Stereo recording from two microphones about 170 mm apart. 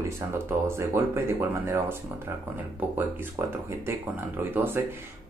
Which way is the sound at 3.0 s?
15° right (ahead or behind).